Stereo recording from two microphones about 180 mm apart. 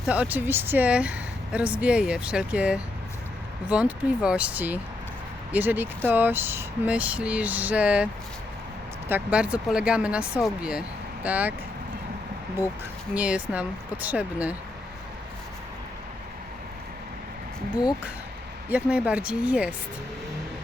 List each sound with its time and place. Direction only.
0.1 s speech: 10° right (ahead or behind)
13.1 s speech: 10° right (ahead or behind)
18.7 s speech: 5° right (ahead or behind)